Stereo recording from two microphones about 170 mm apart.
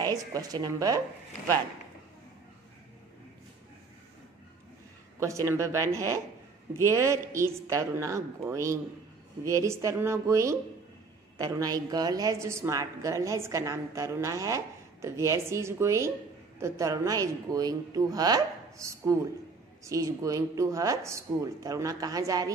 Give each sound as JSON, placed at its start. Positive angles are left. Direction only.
{"t": 0.0, "sound": "speech", "side_deg": -20}
{"t": 5.2, "sound": "a woman's voice", "side_deg": -15}